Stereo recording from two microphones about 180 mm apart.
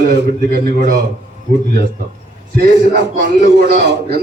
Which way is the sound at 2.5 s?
70° right (ahead or behind).